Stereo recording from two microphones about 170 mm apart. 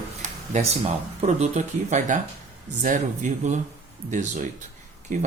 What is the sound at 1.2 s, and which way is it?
A man's voice, 40° right (ahead or behind).